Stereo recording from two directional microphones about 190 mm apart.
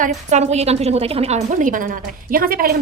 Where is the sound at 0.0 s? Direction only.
40° right (ahead or behind).